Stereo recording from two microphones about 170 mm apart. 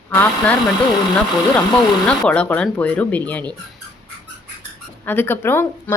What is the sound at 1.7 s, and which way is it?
Speech, 5° left (ahead or behind).